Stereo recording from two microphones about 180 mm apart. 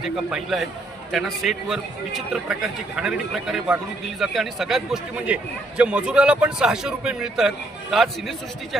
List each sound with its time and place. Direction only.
0.0 s a man's voice: centre (ahead or behind)